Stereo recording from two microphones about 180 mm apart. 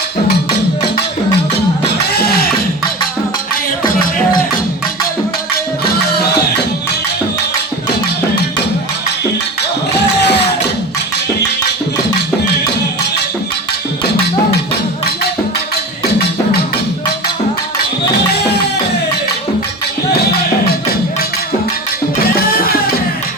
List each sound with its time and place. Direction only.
2.1 s music: 60° left (ahead or behind)
10.2 s music: 70° left (ahead or behind)